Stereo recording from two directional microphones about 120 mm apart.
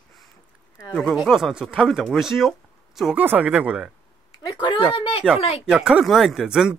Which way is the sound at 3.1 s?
15° right (ahead or behind).